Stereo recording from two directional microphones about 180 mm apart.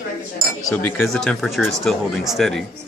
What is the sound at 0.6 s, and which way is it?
Speech, 15° left (ahead or behind).